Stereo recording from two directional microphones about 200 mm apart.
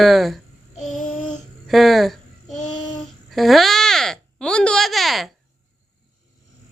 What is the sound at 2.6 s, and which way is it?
Child singing, 40° left (ahead or behind).